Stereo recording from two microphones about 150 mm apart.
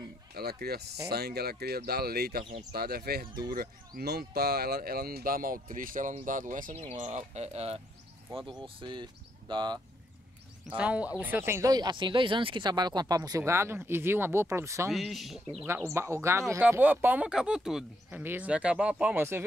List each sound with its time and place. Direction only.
0.3 s speech: 90° right; by 7.8 s 45° right (ahead or behind)
8.5 s speech: 30° right (ahead or behind)
10.8 s speech: 10° right (ahead or behind)
14.9 s speech: centre (ahead or behind)
15.9 s speech: 15° right (ahead or behind)